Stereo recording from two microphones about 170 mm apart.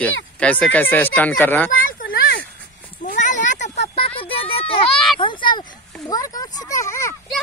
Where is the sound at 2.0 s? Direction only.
60° left (ahead or behind).